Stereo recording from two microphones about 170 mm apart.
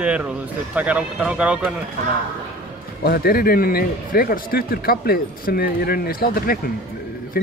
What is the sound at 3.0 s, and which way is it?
A man's voice, 65° left (ahead or behind).